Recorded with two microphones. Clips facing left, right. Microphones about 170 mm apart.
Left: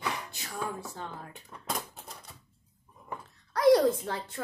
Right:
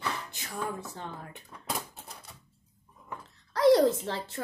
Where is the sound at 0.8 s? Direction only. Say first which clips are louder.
Left 1 dB; 20° right (ahead or behind).